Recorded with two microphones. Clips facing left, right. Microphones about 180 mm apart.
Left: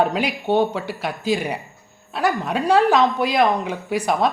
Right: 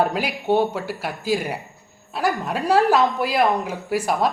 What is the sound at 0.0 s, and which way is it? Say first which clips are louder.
Speech: left 2 dB; 5° right (ahead or behind).